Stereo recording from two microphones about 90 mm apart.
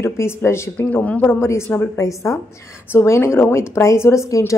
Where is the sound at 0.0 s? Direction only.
30° left (ahead or behind).